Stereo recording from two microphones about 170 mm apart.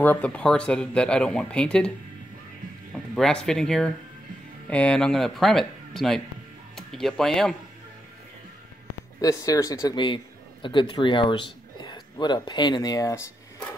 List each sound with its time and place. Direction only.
0.0 s speech: 10° left (ahead or behind)
2.9 s speech: 5° left (ahead or behind)
9.2 s a man's voice: 20° left (ahead or behind)